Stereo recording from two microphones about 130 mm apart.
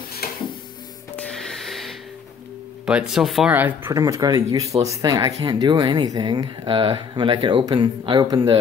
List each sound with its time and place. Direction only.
1.1 s music: 5° left (ahead or behind)
2.8 s speech: 5° right (ahead or behind)
3.5 s speech: 15° right (ahead or behind)
3.9 s speech: 25° right (ahead or behind)